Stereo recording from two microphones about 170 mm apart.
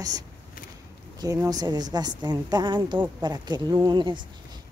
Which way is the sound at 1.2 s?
20° right (ahead or behind).